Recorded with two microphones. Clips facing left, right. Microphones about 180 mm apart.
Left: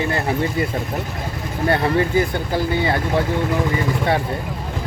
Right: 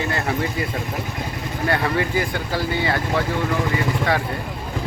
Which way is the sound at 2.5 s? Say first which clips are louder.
Left 3 dB; 20° left (ahead or behind).